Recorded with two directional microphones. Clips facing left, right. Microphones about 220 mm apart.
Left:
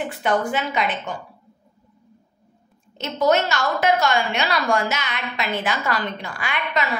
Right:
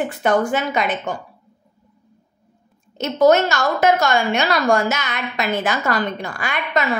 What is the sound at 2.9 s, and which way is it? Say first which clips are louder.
A woman's voice: right 5 dB; 45° right (ahead or behind).